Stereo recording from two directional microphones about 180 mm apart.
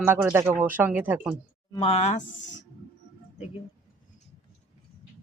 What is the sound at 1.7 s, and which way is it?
Speech, 35° left (ahead or behind).